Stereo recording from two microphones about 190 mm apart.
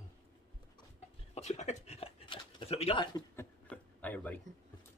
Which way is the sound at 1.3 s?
35° left (ahead or behind).